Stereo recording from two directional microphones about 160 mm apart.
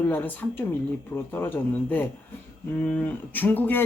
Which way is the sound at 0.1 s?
10° left (ahead or behind).